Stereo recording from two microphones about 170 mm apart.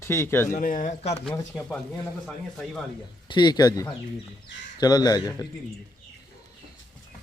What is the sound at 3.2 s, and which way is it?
Speech, 25° left (ahead or behind).